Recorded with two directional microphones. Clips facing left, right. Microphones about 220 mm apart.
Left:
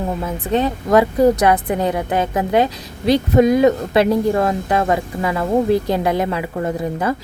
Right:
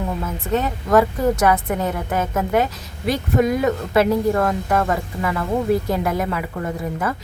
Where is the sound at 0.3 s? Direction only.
35° left (ahead or behind).